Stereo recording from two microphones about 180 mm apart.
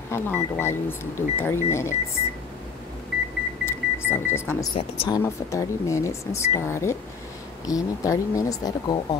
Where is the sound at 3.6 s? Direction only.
15° left (ahead or behind).